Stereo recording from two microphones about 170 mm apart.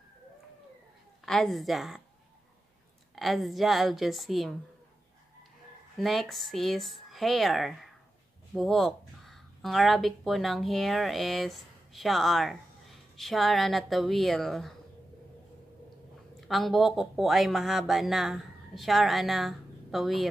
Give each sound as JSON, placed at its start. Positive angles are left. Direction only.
{"t": 1.2, "sound": "speech", "side_deg": 0}
{"t": 3.2, "sound": "speech", "side_deg": 0}
{"t": 5.9, "sound": "speech", "side_deg": 0}
{"t": 16.3, "sound": "speech", "side_deg": 0}